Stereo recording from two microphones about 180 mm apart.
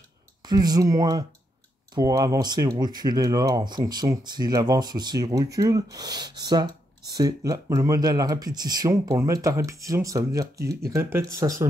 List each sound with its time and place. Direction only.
0.5 s speech: 20° right (ahead or behind)